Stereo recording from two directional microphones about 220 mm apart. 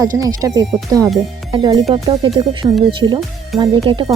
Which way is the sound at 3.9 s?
20° right (ahead or behind).